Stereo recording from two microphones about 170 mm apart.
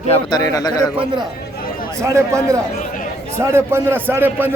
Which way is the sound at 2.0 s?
15° right (ahead or behind).